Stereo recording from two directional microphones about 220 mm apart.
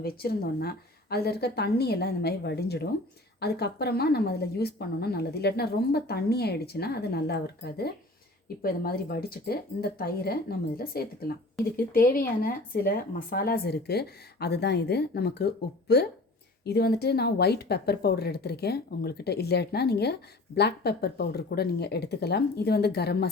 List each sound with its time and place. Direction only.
0.0 s a woman's voice: 45° left (ahead or behind)